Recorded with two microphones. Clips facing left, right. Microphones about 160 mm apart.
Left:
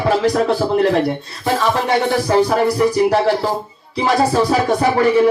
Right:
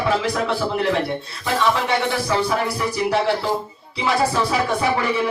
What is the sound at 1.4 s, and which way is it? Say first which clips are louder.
Music: left 3 dB; 35° left (ahead or behind).